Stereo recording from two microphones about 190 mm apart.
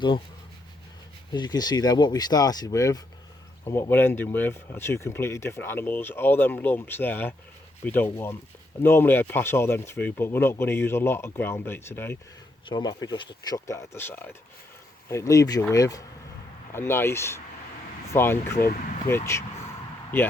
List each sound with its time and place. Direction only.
1.3 s speech: 20° left (ahead or behind)
12.6 s speech: 20° left (ahead or behind)